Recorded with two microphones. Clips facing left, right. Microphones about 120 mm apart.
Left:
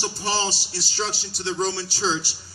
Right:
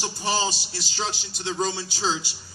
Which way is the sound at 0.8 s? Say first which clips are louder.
Left 2 dB; 20° right (ahead or behind).